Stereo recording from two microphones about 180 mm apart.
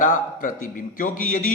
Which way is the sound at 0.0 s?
45° left (ahead or behind).